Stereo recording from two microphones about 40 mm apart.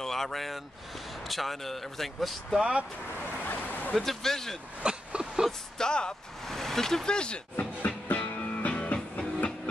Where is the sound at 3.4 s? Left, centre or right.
Left.